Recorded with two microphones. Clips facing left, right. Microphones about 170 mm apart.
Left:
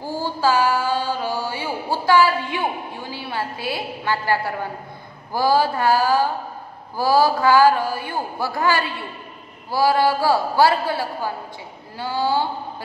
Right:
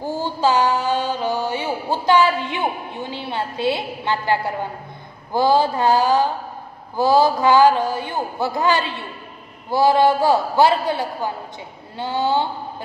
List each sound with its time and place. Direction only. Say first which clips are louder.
0.0 s mantra: right 1 dB; 20° right (ahead or behind)
5.3 s a man's voice: right 2 dB; 20° right (ahead or behind)